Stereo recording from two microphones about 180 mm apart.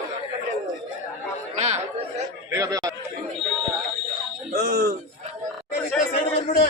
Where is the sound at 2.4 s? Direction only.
20° right (ahead or behind).